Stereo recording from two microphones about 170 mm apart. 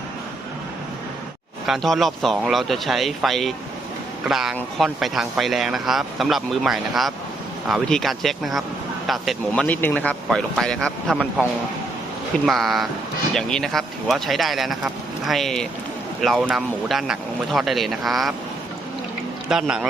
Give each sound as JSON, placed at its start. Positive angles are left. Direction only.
{"t": 1.6, "sound": "speech", "side_deg": 0}
{"t": 12.5, "sound": "speech", "side_deg": 0}
{"t": 19.5, "sound": "speech", "side_deg": -5}